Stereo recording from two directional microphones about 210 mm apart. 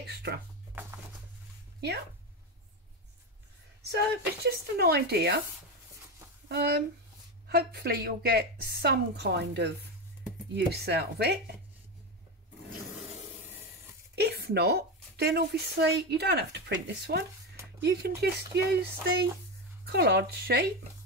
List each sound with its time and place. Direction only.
0.1 s a woman's voice: 50° right (ahead or behind)
4.5 s a woman's voice: 50° right (ahead or behind)
6.5 s a woman's voice: 50° right (ahead or behind)
14.1 s a woman's voice: 50° right (ahead or behind)